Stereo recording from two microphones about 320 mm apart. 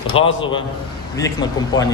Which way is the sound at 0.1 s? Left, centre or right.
Centre.